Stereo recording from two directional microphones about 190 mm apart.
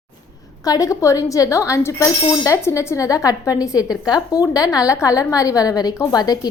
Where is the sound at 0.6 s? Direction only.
20° left (ahead or behind).